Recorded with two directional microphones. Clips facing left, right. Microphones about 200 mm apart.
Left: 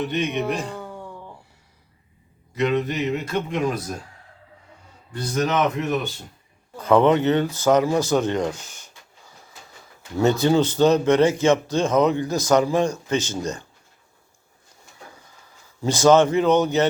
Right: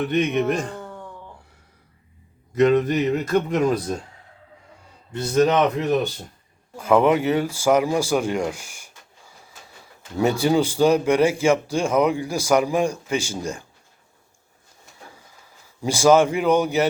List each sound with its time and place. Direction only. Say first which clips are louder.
0.0 s speech: right 3 dB; 55° right (ahead or behind)
0.8 s a sound: left 1 dB; 10° left (ahead or behind)
2.6 s a sound: right 5 dB; 45° right (ahead or behind)
5.1 s a man's voice: right 4 dB; 30° right (ahead or behind)
6.7 s speech: left 1 dB; 10° right (ahead or behind)
15.8 s speech: even; 10° right (ahead or behind)